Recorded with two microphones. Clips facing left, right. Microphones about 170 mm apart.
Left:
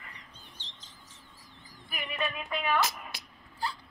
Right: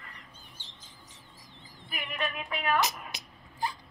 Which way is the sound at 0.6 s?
50° right (ahead or behind).